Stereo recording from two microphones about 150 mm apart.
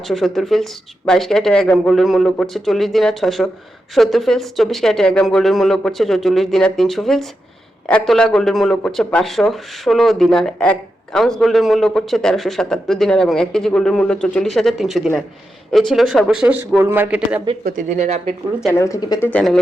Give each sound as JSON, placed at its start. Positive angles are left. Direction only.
{"t": 0.1, "sound": "speech", "side_deg": 0}
{"t": 1.9, "sound": "a man's voice", "side_deg": 0}
{"t": 17.7, "sound": "speech", "side_deg": -50}
{"t": 18.7, "sound": "speech", "side_deg": 20}
{"t": 19.2, "sound": "speech", "side_deg": 10}